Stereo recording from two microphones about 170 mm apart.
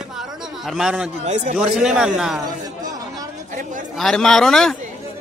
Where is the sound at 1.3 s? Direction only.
45° right (ahead or behind).